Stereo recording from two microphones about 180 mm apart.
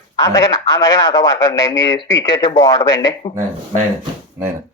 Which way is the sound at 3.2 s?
35° left (ahead or behind).